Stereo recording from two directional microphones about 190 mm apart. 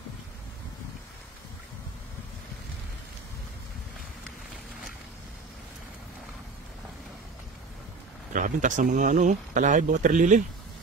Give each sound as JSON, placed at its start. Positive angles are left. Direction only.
{"t": 8.3, "sound": "speech", "side_deg": -45}